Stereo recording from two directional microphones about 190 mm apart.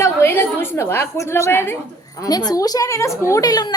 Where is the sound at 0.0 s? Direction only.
15° left (ahead or behind).